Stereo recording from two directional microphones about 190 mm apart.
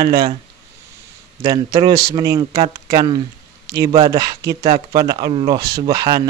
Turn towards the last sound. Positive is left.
turn(degrees=-20)  # may be behind; listen again after turning